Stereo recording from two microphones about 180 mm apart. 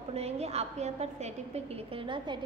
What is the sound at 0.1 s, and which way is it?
A woman's voice, 35° right (ahead or behind).